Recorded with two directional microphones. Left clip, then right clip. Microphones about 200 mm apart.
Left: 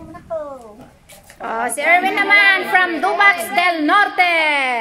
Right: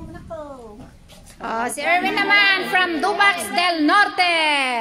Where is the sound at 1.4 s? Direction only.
5° right (ahead or behind).